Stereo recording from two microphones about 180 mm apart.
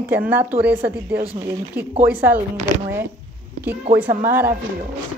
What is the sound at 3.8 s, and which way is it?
Speech, 45° right (ahead or behind).